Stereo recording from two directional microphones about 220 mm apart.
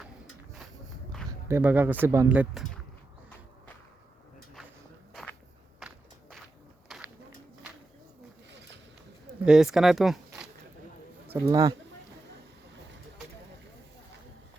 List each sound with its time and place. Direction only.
1.5 s speech: 10° right (ahead or behind)
5.8 s walk: centre (ahead or behind)
6.8 s a sound: centre (ahead or behind)
9.4 s speech: 5° right (ahead or behind)
11.3 s speech: 15° right (ahead or behind)